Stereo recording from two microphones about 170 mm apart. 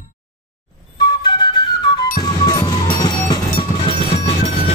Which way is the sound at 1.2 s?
25° left (ahead or behind).